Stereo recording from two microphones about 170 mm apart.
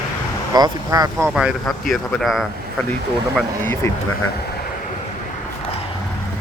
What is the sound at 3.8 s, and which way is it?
Speech, 20° left (ahead or behind).